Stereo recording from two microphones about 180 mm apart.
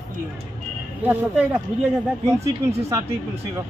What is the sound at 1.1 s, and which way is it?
Speech, 10° right (ahead or behind).